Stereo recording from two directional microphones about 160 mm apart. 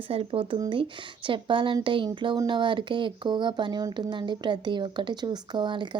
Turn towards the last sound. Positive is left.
turn(degrees=-30)  # may be behind; listen again after turning